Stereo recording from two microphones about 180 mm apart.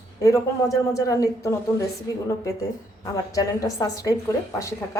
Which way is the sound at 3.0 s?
20° left (ahead or behind).